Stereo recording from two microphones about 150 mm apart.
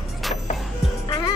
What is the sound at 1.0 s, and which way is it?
Music, 25° left (ahead or behind).